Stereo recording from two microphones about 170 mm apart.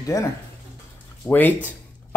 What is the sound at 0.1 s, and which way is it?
Speech, 20° left (ahead or behind).